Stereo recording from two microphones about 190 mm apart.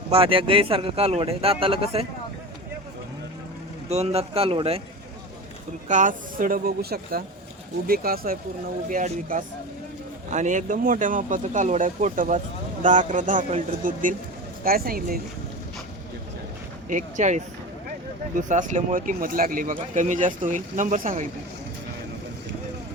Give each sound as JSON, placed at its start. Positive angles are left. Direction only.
{"t": 0.1, "sound": "speech", "side_deg": -30}
{"t": 3.8, "sound": "speech", "side_deg": -35}
{"t": 5.9, "sound": "speech", "side_deg": -40}
{"t": 16.9, "sound": "speech", "side_deg": -40}